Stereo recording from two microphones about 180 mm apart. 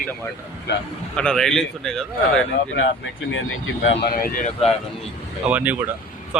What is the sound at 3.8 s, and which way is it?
Speech, 60° left (ahead or behind).